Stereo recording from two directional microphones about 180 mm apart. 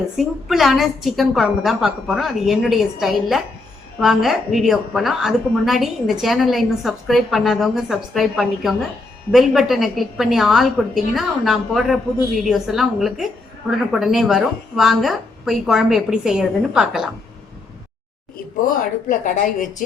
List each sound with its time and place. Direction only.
0.2 s a woman's voice: centre (ahead or behind)
18.6 s speech: 50° left (ahead or behind)